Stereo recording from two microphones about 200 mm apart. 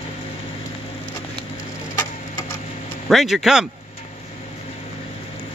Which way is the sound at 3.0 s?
Centre (ahead or behind).